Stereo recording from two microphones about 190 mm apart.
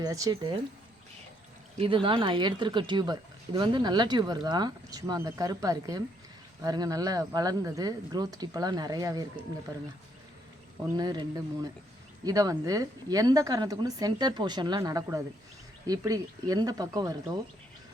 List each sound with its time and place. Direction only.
0.0 s speech: 20° right (ahead or behind)
1.8 s speech: 25° right (ahead or behind)
10.9 s speech: 20° right (ahead or behind)